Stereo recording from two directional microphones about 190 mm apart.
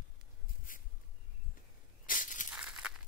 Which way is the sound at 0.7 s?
45° left (ahead or behind).